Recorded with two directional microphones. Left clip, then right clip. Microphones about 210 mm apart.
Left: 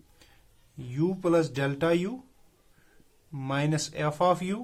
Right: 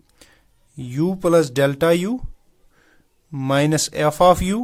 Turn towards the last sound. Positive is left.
turn(degrees=-50)  # may be behind; listen again after turning